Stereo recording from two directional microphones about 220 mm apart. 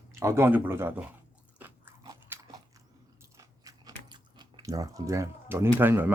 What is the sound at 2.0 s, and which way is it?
Biting, 15° right (ahead or behind).